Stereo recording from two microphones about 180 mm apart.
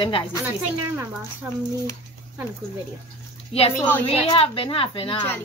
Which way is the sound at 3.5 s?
35° left (ahead or behind).